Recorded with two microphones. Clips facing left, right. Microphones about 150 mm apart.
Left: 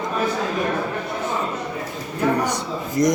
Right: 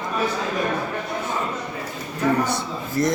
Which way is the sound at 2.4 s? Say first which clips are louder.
Left 2 dB; 15° left (ahead or behind).